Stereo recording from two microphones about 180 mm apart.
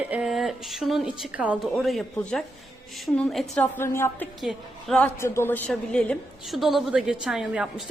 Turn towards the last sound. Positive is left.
turn(degrees=-5)  # may be behind; listen again after turning